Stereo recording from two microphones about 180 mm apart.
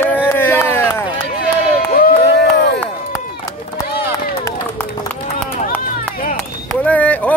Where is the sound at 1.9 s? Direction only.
55° left (ahead or behind).